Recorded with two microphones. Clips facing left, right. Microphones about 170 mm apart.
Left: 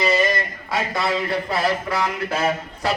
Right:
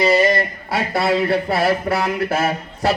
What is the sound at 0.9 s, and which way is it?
Speech, 35° right (ahead or behind).